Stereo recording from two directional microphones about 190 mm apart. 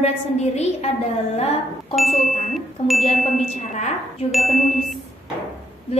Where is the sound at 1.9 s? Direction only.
Centre (ahead or behind).